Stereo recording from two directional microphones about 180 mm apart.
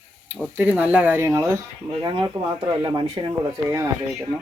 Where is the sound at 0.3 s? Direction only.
5° right (ahead or behind).